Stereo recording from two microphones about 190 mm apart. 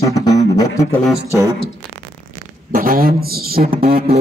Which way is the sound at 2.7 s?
50° right (ahead or behind).